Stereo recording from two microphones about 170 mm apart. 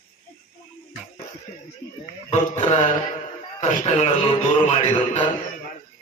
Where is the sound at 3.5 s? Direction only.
40° left (ahead or behind).